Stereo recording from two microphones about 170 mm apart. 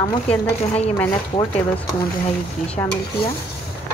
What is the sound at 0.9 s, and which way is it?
Speech, 15° left (ahead or behind).